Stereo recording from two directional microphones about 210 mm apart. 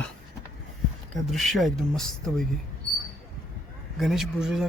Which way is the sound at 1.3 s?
Centre (ahead or behind).